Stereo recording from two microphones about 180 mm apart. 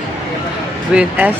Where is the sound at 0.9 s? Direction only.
10° right (ahead or behind).